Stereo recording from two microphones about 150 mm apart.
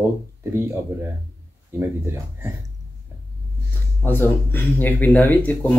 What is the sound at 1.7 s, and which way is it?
Speech, 15° right (ahead or behind).